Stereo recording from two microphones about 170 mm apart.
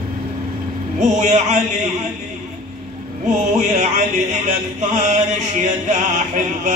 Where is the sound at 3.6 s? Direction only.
45° right (ahead or behind).